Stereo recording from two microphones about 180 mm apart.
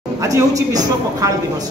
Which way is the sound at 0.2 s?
20° right (ahead or behind).